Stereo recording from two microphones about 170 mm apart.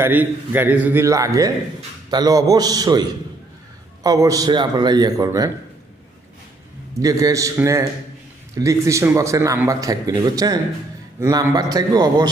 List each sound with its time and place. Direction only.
0.0 s a man's voice: 10° right (ahead or behind)
7.0 s a man's voice: 20° right (ahead or behind)